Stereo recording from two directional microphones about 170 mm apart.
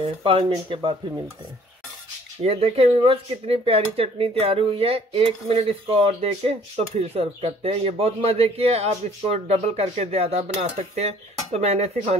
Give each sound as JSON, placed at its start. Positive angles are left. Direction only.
{"t": 0.0, "sound": "speech", "side_deg": -35}
{"t": 2.4, "sound": "speech", "side_deg": -35}